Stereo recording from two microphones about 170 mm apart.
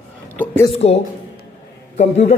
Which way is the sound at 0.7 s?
40° left (ahead or behind).